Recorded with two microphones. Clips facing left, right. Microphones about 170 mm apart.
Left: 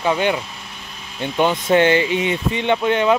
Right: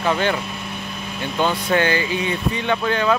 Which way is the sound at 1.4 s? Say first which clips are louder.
Left 4 dB; 25° left (ahead or behind).